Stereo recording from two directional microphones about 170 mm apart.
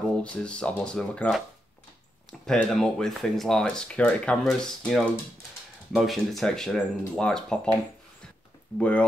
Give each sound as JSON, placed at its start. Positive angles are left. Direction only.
{"t": 0.2, "sound": "speech", "side_deg": 5}
{"t": 2.4, "sound": "speech", "side_deg": 0}
{"t": 8.7, "sound": "speech", "side_deg": 5}